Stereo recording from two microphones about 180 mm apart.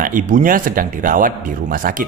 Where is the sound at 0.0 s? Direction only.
50° right (ahead or behind).